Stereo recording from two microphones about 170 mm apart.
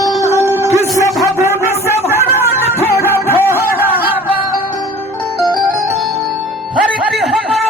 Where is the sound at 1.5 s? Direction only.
15° right (ahead or behind).